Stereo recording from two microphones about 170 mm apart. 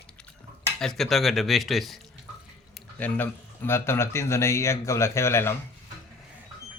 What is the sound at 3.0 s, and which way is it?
Speech, 10° left (ahead or behind).